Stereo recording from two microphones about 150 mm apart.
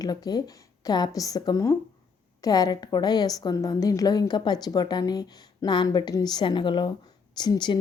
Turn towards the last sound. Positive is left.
turn(degrees=30)  # may be behind; listen again after turning